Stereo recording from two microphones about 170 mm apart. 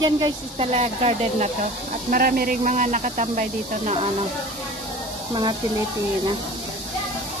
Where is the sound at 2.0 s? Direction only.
60° right (ahead or behind); by 4.1 s 40° right (ahead or behind).